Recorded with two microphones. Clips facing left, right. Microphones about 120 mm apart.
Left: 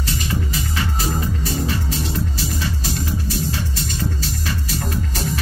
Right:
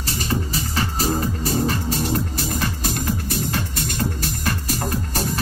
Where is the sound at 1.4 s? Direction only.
45° right (ahead or behind).